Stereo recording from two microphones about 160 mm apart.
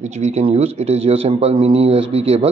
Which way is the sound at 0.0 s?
45° right (ahead or behind).